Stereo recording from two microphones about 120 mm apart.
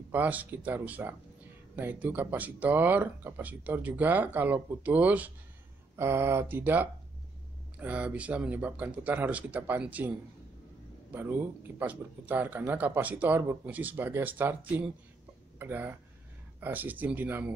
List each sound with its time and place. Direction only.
0.1 s a man's voice: 15° right (ahead or behind)